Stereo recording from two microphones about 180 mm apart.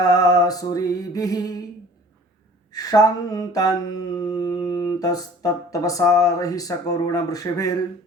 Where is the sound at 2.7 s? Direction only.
20° left (ahead or behind).